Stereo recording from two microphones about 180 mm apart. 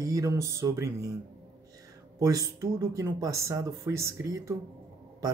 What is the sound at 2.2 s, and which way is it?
Speech, 20° right (ahead or behind).